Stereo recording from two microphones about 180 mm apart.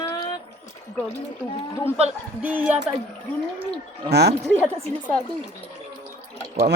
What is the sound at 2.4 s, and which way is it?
Speech, 10° right (ahead or behind).